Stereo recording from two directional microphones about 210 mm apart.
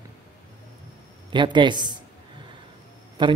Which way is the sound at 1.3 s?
20° right (ahead or behind).